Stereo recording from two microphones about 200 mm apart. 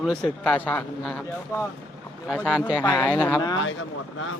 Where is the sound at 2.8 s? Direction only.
20° left (ahead or behind).